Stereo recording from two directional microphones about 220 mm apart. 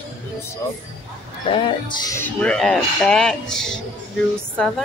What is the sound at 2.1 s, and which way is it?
Speech, 10° left (ahead or behind).